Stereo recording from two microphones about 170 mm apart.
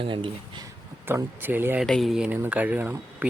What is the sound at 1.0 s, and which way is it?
Speech, 10° right (ahead or behind).